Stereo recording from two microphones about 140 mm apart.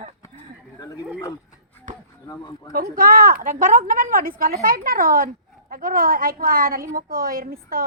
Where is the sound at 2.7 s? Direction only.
90° right.